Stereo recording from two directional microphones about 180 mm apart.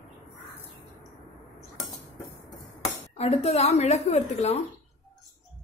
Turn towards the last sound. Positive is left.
turn(degrees=35)  # may be behind; listen again after turning